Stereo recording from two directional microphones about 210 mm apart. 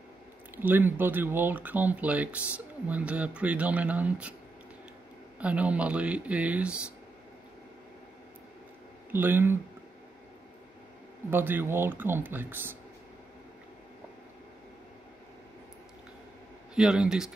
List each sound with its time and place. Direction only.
0.6 s speech: 10° right (ahead or behind)
5.4 s speech: 5° right (ahead or behind)
9.1 s speech: 10° right (ahead or behind)
11.2 s speech: 10° right (ahead or behind)
16.7 s speech: 5° right (ahead or behind)